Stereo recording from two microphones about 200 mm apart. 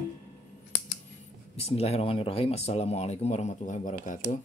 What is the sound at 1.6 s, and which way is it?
Speech, 30° left (ahead or behind).